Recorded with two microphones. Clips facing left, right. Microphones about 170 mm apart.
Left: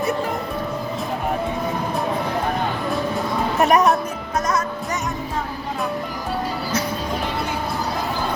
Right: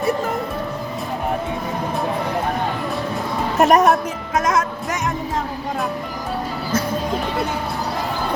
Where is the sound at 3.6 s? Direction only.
45° right (ahead or behind).